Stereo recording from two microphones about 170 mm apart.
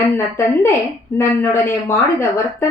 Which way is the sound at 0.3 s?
15° left (ahead or behind).